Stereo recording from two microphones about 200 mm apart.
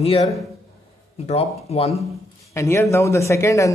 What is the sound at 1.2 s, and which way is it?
Speech, 30° left (ahead or behind).